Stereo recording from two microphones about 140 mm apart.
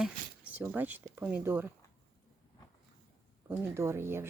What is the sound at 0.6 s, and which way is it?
Speech, 15° right (ahead or behind).